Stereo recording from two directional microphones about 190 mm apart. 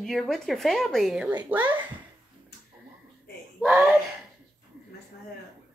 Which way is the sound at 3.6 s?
10° right (ahead or behind).